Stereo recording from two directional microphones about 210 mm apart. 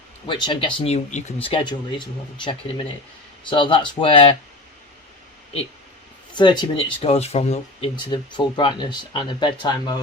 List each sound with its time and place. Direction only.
0.3 s speech: 20° left (ahead or behind)
6.3 s speech: 20° left (ahead or behind)